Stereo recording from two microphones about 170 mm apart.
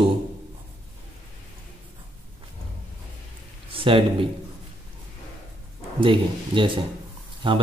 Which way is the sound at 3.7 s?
30° right (ahead or behind).